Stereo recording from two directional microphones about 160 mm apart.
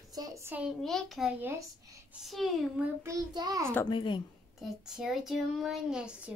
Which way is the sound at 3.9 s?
30° left (ahead or behind).